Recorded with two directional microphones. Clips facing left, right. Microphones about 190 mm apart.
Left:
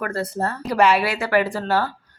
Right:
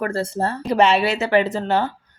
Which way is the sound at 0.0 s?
25° right (ahead or behind).